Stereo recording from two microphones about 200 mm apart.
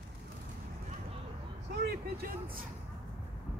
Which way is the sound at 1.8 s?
50° right (ahead or behind).